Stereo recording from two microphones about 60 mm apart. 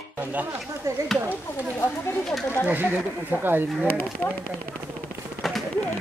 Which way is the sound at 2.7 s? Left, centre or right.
Right.